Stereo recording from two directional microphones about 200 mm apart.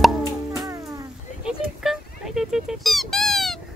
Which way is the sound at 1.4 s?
5° right (ahead or behind).